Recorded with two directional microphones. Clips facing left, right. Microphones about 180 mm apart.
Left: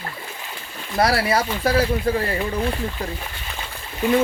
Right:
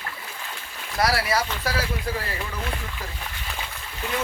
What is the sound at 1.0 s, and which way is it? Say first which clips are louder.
Speech: left 4 dB; 25° left (ahead or behind).